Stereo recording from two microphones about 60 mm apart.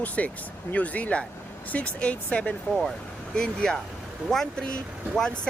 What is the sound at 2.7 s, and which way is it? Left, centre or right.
Speech, centre.